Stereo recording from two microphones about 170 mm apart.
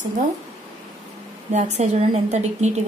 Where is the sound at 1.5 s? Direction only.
45° right (ahead or behind).